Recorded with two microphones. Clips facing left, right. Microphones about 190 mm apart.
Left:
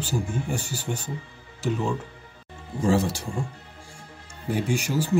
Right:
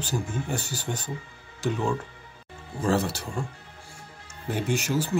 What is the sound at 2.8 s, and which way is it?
Speech, 15° left (ahead or behind).